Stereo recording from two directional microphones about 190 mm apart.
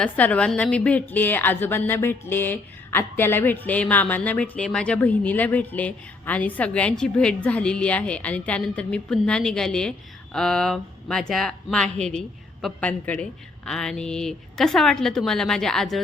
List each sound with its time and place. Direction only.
0.0 s a woman's voice: 5° left (ahead or behind)